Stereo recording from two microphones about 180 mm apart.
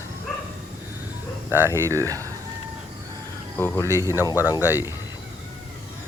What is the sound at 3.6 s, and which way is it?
Speech, 10° left (ahead or behind).